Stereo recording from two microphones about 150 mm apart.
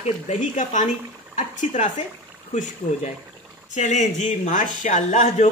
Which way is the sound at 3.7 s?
55° left (ahead or behind).